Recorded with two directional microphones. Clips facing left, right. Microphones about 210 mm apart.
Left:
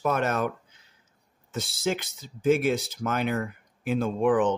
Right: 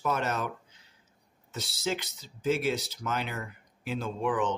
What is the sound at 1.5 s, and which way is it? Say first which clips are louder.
Speech: left 4 dB; 50° left (ahead or behind).